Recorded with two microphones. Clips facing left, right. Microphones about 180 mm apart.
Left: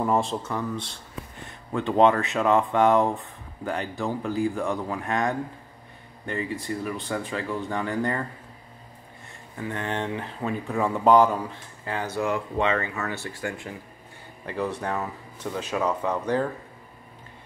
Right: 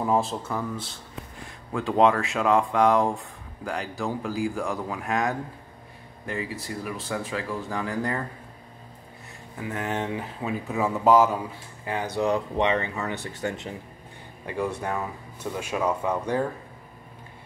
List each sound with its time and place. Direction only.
0.0 s speech: centre (ahead or behind)
9.7 s speech: 5° right (ahead or behind)
11.8 s speech: 15° right (ahead or behind)